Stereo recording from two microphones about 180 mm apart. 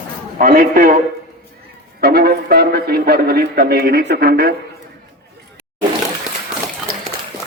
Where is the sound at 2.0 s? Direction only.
60° right (ahead or behind).